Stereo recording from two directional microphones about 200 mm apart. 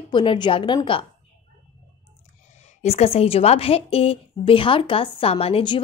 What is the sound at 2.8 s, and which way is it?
A woman's voice, 30° left (ahead or behind).